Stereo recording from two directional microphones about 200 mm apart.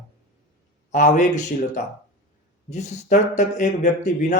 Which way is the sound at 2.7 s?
35° left (ahead or behind).